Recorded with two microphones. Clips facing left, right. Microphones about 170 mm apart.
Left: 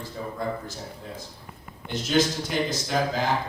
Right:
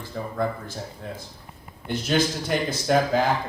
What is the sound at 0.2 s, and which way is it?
Speech, 60° right (ahead or behind).